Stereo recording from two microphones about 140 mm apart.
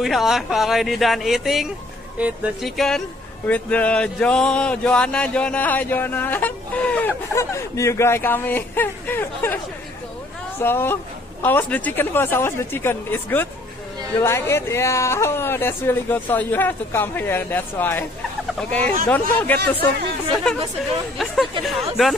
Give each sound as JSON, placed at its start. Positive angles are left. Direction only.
{"t": 0.0, "sound": "speech", "side_deg": 0}
{"t": 3.4, "sound": "speech", "side_deg": 10}
{"t": 7.3, "sound": "speech", "side_deg": 20}
{"t": 10.6, "sound": "speech", "side_deg": 15}
{"t": 19.0, "sound": "speech", "side_deg": 15}
{"t": 21.2, "sound": "speech", "side_deg": 0}